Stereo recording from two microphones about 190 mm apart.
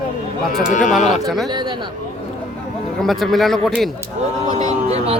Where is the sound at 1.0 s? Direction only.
35° left (ahead or behind).